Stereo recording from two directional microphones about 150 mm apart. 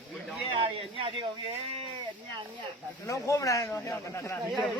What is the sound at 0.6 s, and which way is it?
Speech, 35° right (ahead or behind).